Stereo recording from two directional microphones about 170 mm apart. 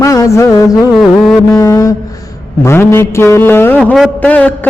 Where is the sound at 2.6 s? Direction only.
15° left (ahead or behind).